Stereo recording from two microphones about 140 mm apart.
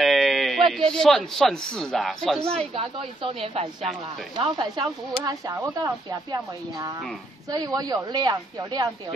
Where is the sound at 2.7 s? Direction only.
40° right (ahead or behind).